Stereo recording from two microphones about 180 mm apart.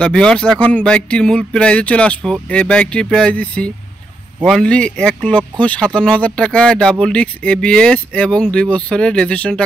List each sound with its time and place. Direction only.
0.0 s speech: 5° left (ahead or behind)